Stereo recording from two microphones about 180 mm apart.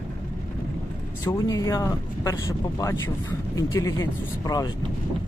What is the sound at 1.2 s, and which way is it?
Speech, 20° left (ahead or behind).